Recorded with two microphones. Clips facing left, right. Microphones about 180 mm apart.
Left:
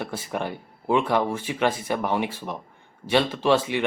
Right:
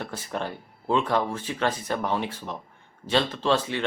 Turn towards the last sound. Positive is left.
turn(degrees=15)  # may be behind; listen again after turning